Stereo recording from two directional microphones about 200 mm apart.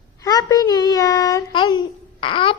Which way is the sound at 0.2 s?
15° left (ahead or behind).